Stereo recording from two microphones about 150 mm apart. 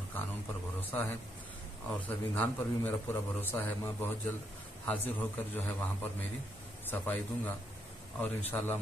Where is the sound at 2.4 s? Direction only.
15° left (ahead or behind).